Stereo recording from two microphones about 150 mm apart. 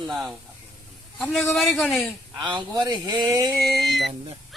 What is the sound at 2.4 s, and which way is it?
Speech, 30° right (ahead or behind).